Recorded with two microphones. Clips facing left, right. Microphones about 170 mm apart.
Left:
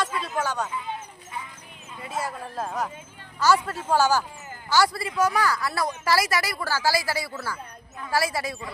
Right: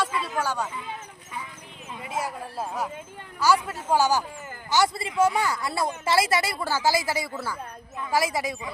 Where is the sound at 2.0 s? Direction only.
15° right (ahead or behind).